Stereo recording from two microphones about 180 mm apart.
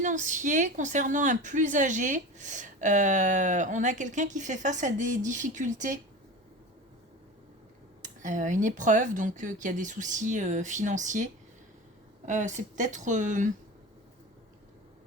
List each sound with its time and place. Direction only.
0.0 s a woman's voice: 45° right (ahead or behind)
8.0 s a woman's voice: 45° right (ahead or behind)